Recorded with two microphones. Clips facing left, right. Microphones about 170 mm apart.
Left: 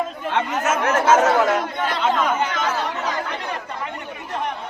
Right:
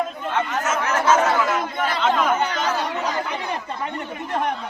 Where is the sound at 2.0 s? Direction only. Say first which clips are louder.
Even; centre (ahead or behind).